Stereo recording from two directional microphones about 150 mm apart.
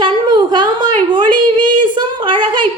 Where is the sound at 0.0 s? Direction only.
30° right (ahead or behind).